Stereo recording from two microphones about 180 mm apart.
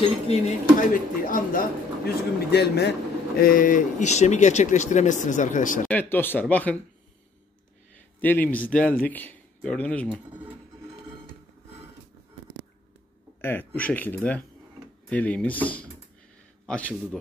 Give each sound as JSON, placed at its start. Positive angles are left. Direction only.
{"t": 0.3, "sound": "speech", "side_deg": 45}
{"t": 5.9, "sound": "speech", "side_deg": 10}
{"t": 8.2, "sound": "speech", "side_deg": 10}
{"t": 13.4, "sound": "speech", "side_deg": 10}